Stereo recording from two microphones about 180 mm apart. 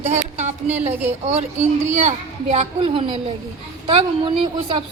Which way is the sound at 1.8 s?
40° right (ahead or behind).